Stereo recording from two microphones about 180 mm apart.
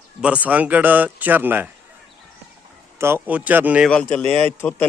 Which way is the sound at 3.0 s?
15° right (ahead or behind).